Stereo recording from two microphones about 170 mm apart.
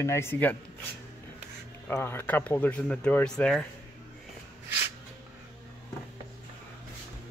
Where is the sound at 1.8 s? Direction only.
15° left (ahead or behind).